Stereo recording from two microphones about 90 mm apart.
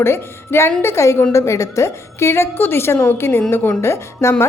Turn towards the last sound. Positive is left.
turn(degrees=30)  # may be behind; listen again after turning